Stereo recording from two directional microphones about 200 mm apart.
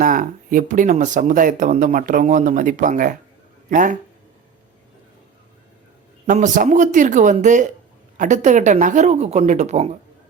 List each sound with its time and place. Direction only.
0.0 s speech: 40° right (ahead or behind)
6.2 s speech: 40° right (ahead or behind)